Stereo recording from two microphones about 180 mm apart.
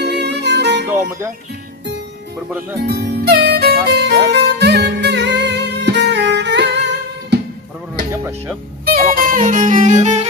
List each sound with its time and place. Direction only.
0.0 s music: 70° right (ahead or behind)
0.9 s speech: 15° right (ahead or behind)
2.8 s music: 60° right (ahead or behind)
8.1 s speech: 15° right (ahead or behind)
8.8 s music: 55° right (ahead or behind)